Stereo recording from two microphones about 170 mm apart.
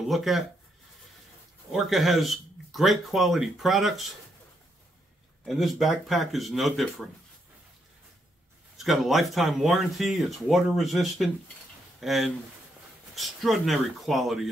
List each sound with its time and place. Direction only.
0.1 s speech: centre (ahead or behind)
1.7 s speech: centre (ahead or behind)
5.4 s speech: centre (ahead or behind)
8.7 s speech: centre (ahead or behind)